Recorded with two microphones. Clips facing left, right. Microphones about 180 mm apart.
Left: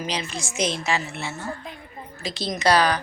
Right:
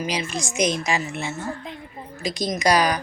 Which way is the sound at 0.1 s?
15° right (ahead or behind).